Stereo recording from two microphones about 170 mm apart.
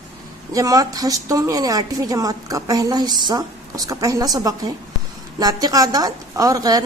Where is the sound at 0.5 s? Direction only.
20° right (ahead or behind).